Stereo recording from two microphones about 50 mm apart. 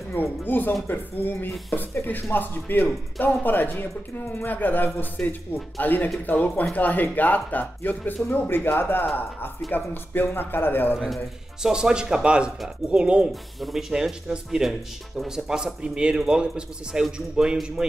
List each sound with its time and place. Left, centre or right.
0.1 s speech: left
8.5 s speech: left
11.6 s a man's voice: centre
13.3 s a man's voice: centre
17.8 s a man's voice: centre